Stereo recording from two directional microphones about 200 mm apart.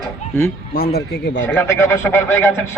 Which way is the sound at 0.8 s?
55° left (ahead or behind).